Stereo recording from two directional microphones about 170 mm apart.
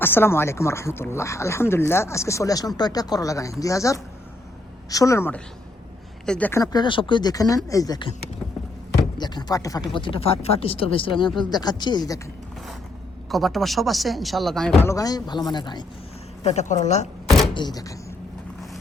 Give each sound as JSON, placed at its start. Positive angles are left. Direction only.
{"t": 0.0, "sound": "speech", "side_deg": 15}
{"t": 6.6, "sound": "speech", "side_deg": 25}
{"t": 9.1, "sound": "speech", "side_deg": 25}
{"t": 13.3, "sound": "speech", "side_deg": 0}
{"t": 14.8, "sound": "speech", "side_deg": 20}
{"t": 16.4, "sound": "speech", "side_deg": 40}
{"t": 17.2, "sound": "door", "side_deg": 0}
{"t": 17.5, "sound": "speech", "side_deg": 25}